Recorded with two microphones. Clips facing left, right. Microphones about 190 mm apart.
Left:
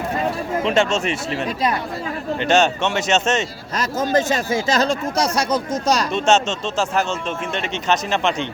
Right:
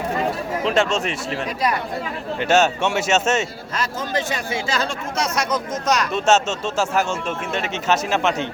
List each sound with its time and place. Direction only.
0.6 s speech: centre (ahead or behind)
2.4 s speech: 5° right (ahead or behind)
4.1 s speech: 45° left (ahead or behind)
6.1 s speech: 5° right (ahead or behind)